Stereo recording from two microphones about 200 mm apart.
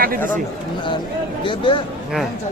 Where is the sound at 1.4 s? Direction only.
25° left (ahead or behind).